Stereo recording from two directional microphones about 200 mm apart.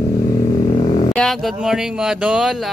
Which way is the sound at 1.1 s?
Centre (ahead or behind).